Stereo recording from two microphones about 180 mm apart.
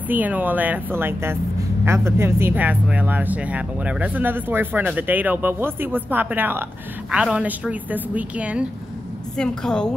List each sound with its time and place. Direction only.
0.1 s speech: 10° right (ahead or behind)
9.4 s a woman's voice: 5° left (ahead or behind)